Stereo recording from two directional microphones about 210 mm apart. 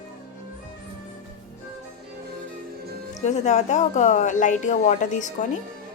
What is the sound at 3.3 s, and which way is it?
Speech, 35° left (ahead or behind).